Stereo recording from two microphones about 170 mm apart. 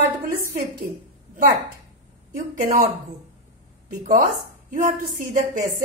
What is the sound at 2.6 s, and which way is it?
Speech, 50° right (ahead or behind).